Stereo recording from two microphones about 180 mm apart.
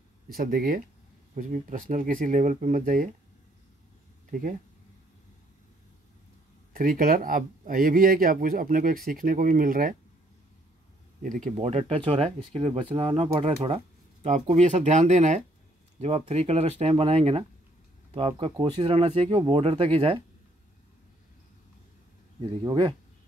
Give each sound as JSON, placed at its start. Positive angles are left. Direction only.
{"t": 0.3, "sound": "speech", "side_deg": -50}
{"t": 4.3, "sound": "speech", "side_deg": -50}
{"t": 6.7, "sound": "speech", "side_deg": -50}
{"t": 11.2, "sound": "speech", "side_deg": -45}
{"t": 14.5, "sound": "speech", "side_deg": -40}
{"t": 22.7, "sound": "speech", "side_deg": -25}